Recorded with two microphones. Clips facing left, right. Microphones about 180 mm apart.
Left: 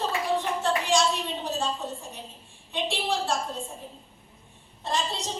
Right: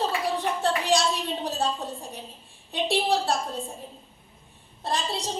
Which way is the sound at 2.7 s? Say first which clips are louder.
Right 4 dB; 35° right (ahead or behind).